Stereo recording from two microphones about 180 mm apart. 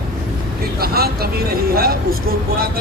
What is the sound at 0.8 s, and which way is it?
Speech, 60° right (ahead or behind).